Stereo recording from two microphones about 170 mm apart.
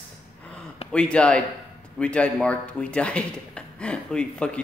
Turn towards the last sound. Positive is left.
turn(degrees=5)  # may be behind; listen again after turning